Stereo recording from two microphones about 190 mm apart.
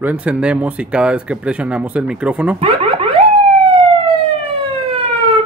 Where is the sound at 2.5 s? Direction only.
30° right (ahead or behind).